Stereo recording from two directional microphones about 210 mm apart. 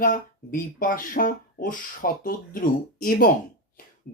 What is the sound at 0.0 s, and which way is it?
Speech, 40° left (ahead or behind).